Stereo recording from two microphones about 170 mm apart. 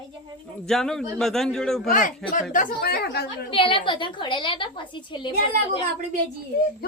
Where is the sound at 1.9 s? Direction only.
50° left (ahead or behind); by 3.2 s 70° left (ahead or behind).